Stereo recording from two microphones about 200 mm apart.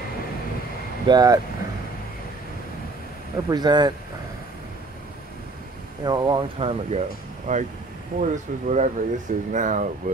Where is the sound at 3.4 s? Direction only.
20° right (ahead or behind).